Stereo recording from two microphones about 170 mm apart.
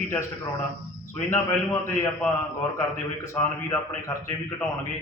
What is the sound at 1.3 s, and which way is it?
Speech, 15° left (ahead or behind).